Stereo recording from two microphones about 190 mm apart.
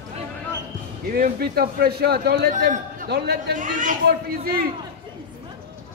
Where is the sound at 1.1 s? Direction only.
50° right (ahead or behind).